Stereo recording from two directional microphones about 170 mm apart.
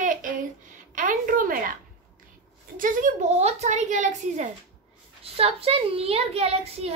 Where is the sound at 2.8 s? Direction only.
50° right (ahead or behind).